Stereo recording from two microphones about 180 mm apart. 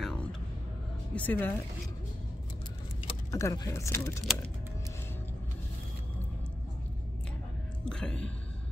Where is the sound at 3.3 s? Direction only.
15° left (ahead or behind).